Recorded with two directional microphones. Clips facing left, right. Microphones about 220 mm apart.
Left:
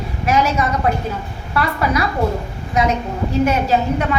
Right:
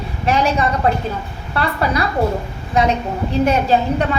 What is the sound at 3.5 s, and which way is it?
Speech, 30° right (ahead or behind).